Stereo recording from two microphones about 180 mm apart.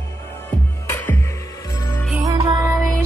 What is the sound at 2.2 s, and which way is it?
Music, 20° right (ahead or behind).